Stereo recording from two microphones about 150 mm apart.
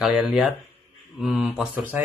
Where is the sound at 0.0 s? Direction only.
5° right (ahead or behind).